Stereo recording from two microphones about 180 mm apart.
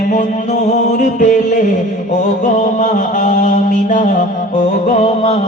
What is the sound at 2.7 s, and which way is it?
Music, 45° left (ahead or behind).